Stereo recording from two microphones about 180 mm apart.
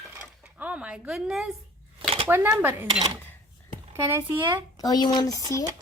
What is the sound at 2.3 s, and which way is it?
Speech, 10° right (ahead or behind).